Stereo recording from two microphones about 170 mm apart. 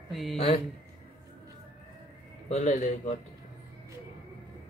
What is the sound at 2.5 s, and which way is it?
Speech, 45° left (ahead or behind).